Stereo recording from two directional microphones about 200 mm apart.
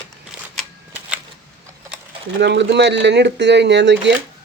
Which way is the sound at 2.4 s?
60° right (ahead or behind).